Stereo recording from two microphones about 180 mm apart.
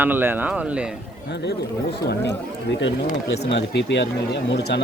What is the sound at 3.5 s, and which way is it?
Speech, 80° left.